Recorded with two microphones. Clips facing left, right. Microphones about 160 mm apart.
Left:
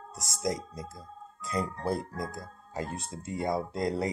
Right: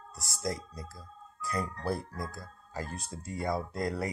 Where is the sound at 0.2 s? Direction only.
20° left (ahead or behind).